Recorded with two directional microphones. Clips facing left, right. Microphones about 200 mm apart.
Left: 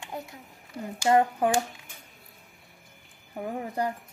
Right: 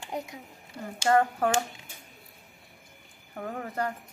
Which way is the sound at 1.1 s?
15° left (ahead or behind).